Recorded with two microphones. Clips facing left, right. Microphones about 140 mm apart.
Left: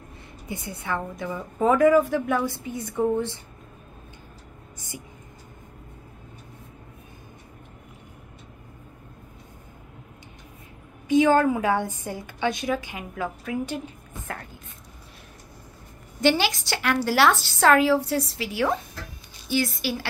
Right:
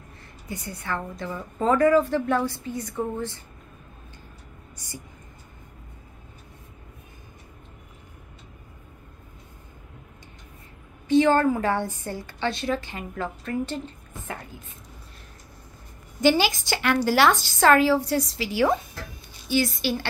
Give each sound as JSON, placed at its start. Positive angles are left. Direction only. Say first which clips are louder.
{"t": 0.5, "sound": "a woman's voice", "louder": "left 1 dB", "side_deg": 15}
{"t": 11.1, "sound": "a sound", "louder": "even", "side_deg": 10}
{"t": 11.4, "sound": "a woman's voice", "louder": "even", "side_deg": 10}
{"t": 14.2, "sound": "speech", "louder": "even", "side_deg": -5}
{"t": 16.2, "sound": "a woman's voice", "louder": "right 1 dB", "side_deg": 0}